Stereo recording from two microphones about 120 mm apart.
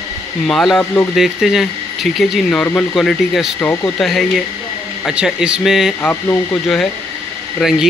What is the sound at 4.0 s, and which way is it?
Speech, centre (ahead or behind).